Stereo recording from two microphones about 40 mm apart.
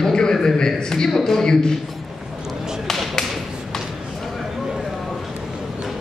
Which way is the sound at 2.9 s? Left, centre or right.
Centre.